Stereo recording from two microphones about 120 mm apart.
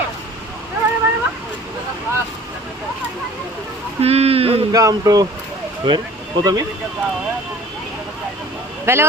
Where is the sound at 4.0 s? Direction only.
60° right (ahead or behind).